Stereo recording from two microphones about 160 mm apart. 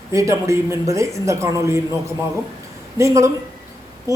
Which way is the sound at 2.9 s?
20° right (ahead or behind).